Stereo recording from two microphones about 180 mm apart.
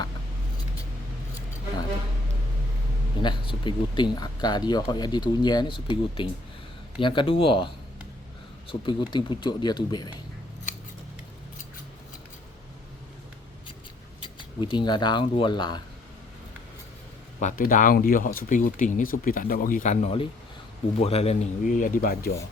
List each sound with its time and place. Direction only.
3.2 s speech: 25° left (ahead or behind)
14.2 s speech: 25° left (ahead or behind)
17.4 s speech: 45° left (ahead or behind)